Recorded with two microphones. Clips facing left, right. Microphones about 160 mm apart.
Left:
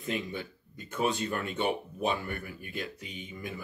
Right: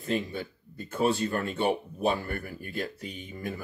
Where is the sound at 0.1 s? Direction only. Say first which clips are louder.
Right 4 dB; 35° right (ahead or behind).